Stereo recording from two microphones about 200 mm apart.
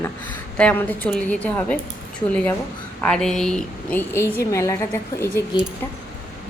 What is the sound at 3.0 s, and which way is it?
Speech, 5° left (ahead or behind).